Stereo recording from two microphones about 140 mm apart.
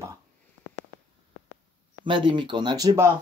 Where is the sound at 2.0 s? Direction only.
35° right (ahead or behind).